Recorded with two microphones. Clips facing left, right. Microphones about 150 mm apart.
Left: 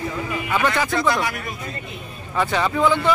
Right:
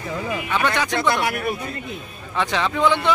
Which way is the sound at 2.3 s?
5° left (ahead or behind).